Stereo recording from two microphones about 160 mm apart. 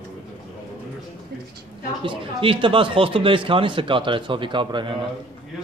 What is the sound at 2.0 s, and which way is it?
Speech, 35° right (ahead or behind).